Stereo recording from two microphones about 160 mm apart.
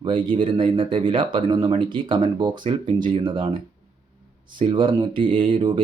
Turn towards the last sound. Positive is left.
turn(degrees=-35)  # may be behind; listen again after turning